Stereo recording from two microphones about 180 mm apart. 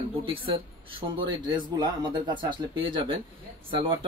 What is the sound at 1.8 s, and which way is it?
Speech, 25° right (ahead or behind).